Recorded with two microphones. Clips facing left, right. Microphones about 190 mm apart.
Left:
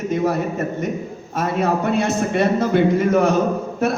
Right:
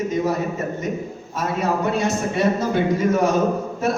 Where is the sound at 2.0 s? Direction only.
60° left (ahead or behind).